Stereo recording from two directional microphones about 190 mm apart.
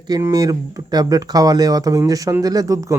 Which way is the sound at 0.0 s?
20° right (ahead or behind).